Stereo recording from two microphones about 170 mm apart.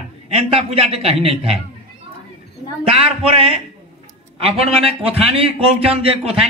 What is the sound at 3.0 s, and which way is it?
A man's voice, 35° right (ahead or behind).